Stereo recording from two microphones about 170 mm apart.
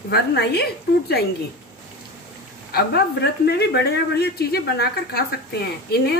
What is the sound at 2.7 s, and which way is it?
A woman's voice, 75° left (ahead or behind).